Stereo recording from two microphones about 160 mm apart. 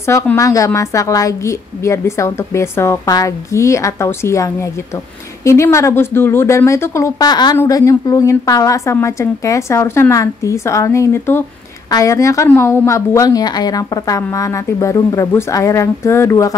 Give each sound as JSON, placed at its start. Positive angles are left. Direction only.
{"t": 0.0, "sound": "a woman's voice", "side_deg": 15}